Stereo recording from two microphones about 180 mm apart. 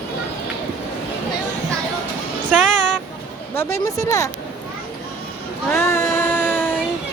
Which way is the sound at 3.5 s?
15° left (ahead or behind).